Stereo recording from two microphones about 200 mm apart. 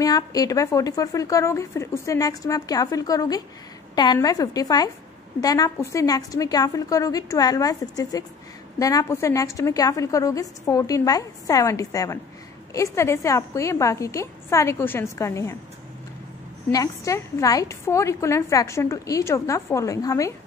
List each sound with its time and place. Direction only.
0.0 s a woman's voice: 20° left (ahead or behind)
16.7 s a woman's voice: 15° left (ahead or behind)